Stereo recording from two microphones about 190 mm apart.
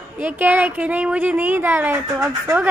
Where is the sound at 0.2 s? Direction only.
10° right (ahead or behind).